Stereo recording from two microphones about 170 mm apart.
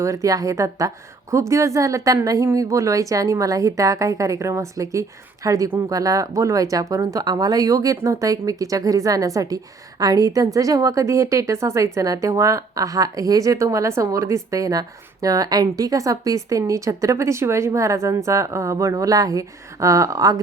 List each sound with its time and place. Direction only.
0.0 s a woman's voice: 20° right (ahead or behind)